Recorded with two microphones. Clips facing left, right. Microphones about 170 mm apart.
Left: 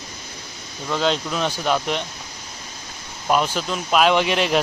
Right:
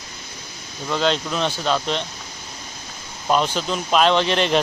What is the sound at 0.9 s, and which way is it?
Speech, 5° left (ahead or behind).